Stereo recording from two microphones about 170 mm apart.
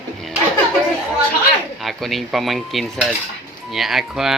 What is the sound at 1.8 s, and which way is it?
Speech, centre (ahead or behind).